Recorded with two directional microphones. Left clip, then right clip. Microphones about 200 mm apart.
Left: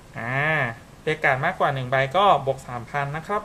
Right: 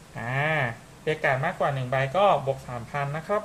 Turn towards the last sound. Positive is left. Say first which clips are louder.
# left 2 dB
turn(degrees=15)  # may be behind; listen again after turning